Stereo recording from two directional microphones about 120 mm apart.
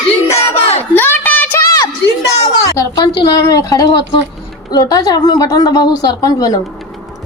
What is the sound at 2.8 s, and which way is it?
A woman's voice, 30° left (ahead or behind).